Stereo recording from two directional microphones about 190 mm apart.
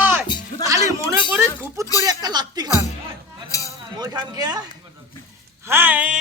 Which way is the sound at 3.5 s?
15° left (ahead or behind).